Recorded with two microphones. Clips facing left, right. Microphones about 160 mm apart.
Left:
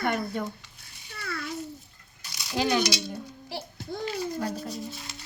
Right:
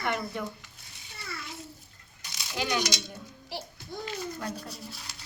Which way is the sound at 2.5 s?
35° left (ahead or behind).